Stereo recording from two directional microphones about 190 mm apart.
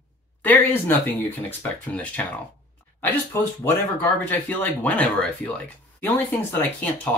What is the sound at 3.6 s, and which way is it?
Speech, 10° left (ahead or behind).